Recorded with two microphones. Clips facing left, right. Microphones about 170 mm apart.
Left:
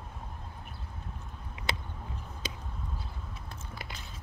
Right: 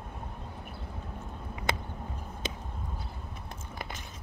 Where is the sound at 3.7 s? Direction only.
50° right (ahead or behind).